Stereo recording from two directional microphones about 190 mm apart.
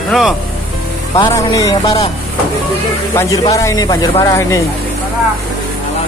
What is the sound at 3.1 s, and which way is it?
Speech, 20° left (ahead or behind).